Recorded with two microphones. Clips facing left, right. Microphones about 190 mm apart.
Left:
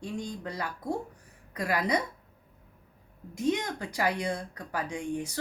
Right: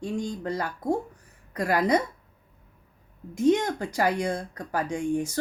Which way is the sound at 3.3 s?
50° right (ahead or behind).